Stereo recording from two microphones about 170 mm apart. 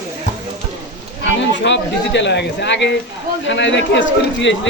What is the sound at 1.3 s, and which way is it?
Speech, 90° left.